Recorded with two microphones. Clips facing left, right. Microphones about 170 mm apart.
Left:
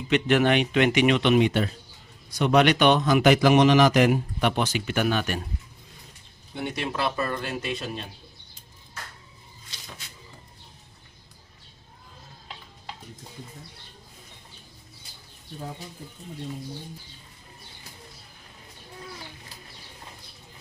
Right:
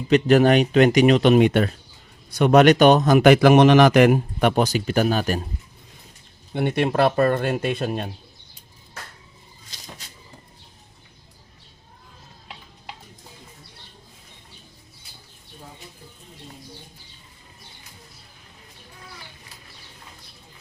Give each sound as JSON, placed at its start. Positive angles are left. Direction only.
{"t": 0.1, "sound": "a man's voice", "side_deg": -40}
{"t": 6.5, "sound": "speech", "side_deg": -60}